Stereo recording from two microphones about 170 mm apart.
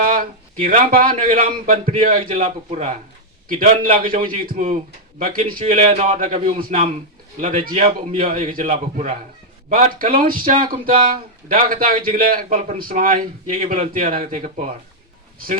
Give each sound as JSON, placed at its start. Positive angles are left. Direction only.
{"t": 0.6, "sound": "a man's voice", "side_deg": -55}
{"t": 2.4, "sound": "speech", "side_deg": -40}
{"t": 3.6, "sound": "a man's voice", "side_deg": -55}
{"t": 5.9, "sound": "speech", "side_deg": -40}
{"t": 6.1, "sound": "a man's voice", "side_deg": -50}
{"t": 14.2, "sound": "speech", "side_deg": -35}